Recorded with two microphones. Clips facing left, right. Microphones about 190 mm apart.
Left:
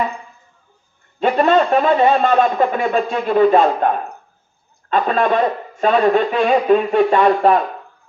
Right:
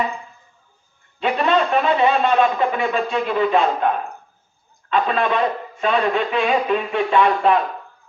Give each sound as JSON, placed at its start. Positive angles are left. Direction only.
{"t": 1.2, "sound": "a man's voice", "side_deg": 45}
{"t": 4.9, "sound": "a man's voice", "side_deg": 45}